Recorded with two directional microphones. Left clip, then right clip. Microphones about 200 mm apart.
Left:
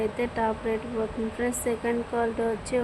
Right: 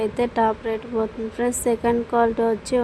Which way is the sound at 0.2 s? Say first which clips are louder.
Right 7 dB; 25° right (ahead or behind).